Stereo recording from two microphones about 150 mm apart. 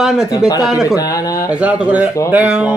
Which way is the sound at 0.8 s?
20° left (ahead or behind).